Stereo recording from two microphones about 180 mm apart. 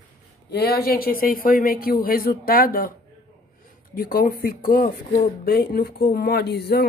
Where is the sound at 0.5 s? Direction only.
60° left (ahead or behind).